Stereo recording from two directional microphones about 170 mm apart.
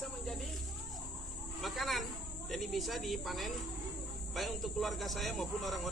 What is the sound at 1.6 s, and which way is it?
Snake, centre (ahead or behind).